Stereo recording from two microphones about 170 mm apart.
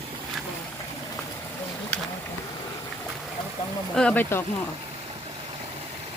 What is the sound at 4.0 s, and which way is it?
Speech, 10° left (ahead or behind).